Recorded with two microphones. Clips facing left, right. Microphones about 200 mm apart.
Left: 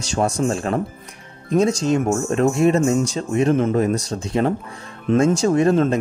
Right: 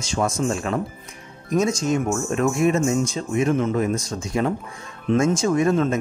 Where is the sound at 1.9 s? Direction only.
35° left (ahead or behind).